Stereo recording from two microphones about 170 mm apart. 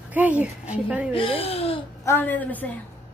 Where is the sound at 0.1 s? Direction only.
10° right (ahead or behind).